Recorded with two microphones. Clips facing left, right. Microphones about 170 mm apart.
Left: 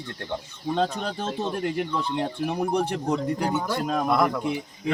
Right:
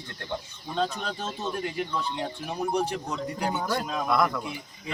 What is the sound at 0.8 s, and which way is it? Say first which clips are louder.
Speech: left 2 dB; 60° left (ahead or behind).